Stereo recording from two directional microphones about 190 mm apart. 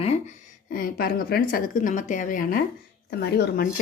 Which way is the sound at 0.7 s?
50° left (ahead or behind).